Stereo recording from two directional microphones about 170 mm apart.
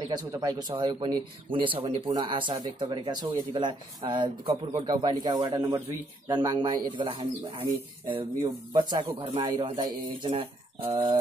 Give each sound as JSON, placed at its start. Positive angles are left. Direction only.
{"t": 0.1, "sound": "speech", "side_deg": -20}